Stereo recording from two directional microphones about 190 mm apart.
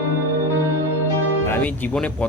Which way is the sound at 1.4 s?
10° left (ahead or behind).